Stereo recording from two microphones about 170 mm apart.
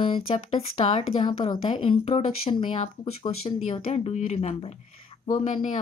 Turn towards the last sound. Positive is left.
turn(degrees=45)  # may be behind; listen again after turning